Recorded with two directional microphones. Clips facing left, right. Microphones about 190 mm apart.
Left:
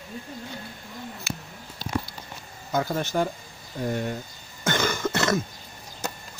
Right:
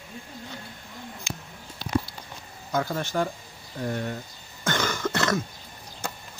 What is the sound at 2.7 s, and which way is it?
Speech, 15° left (ahead or behind).